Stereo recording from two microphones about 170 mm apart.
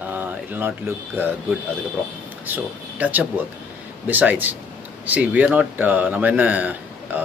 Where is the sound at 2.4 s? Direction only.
10° right (ahead or behind).